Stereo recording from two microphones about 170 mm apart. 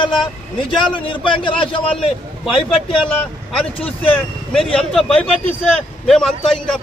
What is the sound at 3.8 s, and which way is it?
Speech, 35° left (ahead or behind).